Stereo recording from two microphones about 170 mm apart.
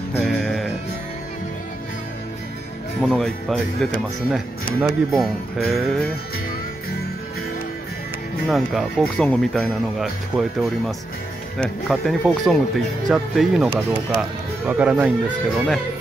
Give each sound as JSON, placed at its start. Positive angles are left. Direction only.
{"t": 0.1, "sound": "music", "side_deg": 5}
{"t": 3.0, "sound": "speech", "side_deg": 5}
{"t": 4.7, "sound": "speech", "side_deg": -15}
{"t": 5.7, "sound": "speech", "side_deg": 0}
{"t": 8.5, "sound": "speech", "side_deg": 0}